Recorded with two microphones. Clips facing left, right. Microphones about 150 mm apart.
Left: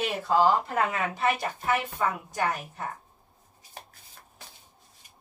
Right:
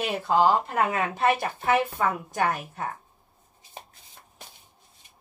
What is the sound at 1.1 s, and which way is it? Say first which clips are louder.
Speech: right 3 dB; 55° right (ahead or behind).